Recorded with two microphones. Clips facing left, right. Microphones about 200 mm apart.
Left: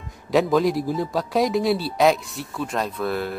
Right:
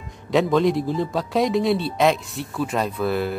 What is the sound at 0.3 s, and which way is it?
Speech, centre (ahead or behind).